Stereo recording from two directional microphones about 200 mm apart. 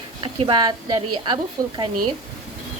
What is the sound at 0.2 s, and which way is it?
Speech, 25° right (ahead or behind).